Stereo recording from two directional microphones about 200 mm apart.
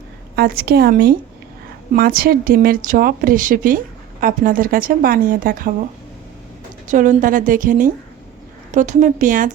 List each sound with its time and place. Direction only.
0.3 s a woman's voice: 50° right (ahead or behind)
6.8 s a woman's voice: 40° right (ahead or behind)